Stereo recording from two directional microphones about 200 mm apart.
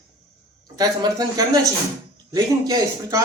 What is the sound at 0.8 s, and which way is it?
Speech, 20° right (ahead or behind).